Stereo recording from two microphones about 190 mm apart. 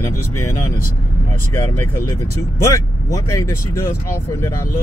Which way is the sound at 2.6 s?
15° left (ahead or behind).